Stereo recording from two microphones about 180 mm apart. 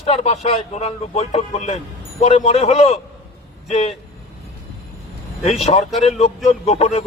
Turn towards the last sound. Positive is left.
turn(degrees=35)  # may be behind; listen again after turning